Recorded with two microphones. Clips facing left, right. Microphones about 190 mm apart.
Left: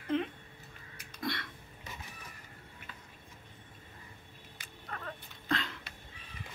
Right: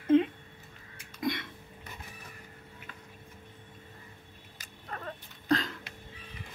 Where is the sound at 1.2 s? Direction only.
20° right (ahead or behind).